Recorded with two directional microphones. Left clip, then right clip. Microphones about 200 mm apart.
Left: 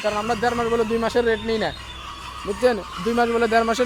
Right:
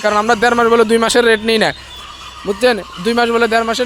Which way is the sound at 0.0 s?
25° right (ahead or behind).